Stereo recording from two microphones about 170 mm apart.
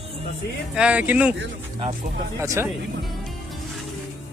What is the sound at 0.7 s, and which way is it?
Speech, 5° right (ahead or behind).